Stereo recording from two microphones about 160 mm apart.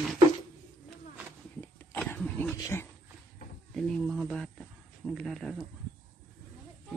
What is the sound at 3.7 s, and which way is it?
Speech, 5° left (ahead or behind).